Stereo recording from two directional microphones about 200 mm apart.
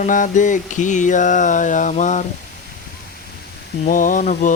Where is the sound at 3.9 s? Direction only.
40° left (ahead or behind).